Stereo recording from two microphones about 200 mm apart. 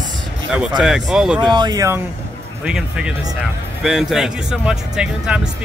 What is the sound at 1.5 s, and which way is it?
Speech, 20° right (ahead or behind).